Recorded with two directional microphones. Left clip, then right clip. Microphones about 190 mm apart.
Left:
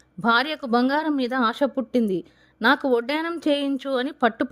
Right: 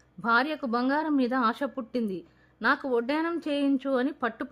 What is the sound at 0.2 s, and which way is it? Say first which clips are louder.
Speech: left 4 dB; 35° left (ahead or behind).